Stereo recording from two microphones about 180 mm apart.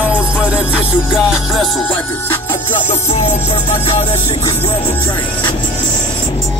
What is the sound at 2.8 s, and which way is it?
Music, 35° left (ahead or behind).